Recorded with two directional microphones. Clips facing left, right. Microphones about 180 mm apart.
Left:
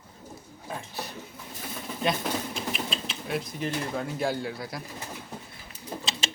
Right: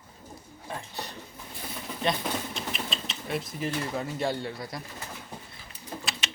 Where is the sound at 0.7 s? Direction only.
5° left (ahead or behind).